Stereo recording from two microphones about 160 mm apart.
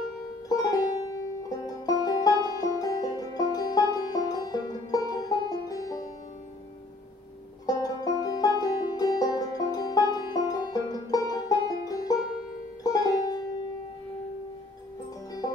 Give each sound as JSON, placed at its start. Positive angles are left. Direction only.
{"t": 0.5, "sound": "music", "side_deg": 25}
{"t": 7.6, "sound": "music", "side_deg": 25}